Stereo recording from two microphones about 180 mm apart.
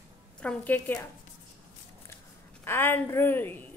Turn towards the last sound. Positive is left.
turn(degrees=10)  # may be behind; listen again after turning